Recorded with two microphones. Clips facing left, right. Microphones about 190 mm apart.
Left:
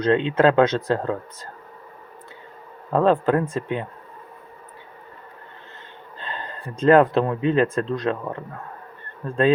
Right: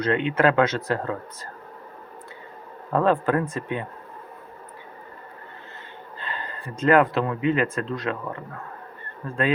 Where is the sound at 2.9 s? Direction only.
20° left (ahead or behind).